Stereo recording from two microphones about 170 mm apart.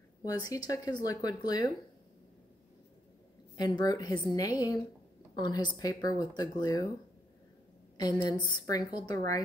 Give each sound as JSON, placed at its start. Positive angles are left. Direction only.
{"t": 0.2, "sound": "speech", "side_deg": 20}
{"t": 3.5, "sound": "speech", "side_deg": 25}
{"t": 8.0, "sound": "speech", "side_deg": 25}